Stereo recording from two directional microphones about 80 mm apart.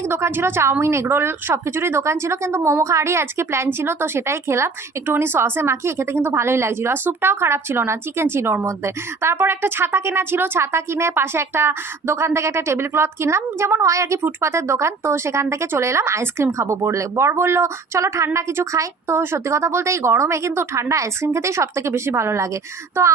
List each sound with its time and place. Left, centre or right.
0.1 s speech: right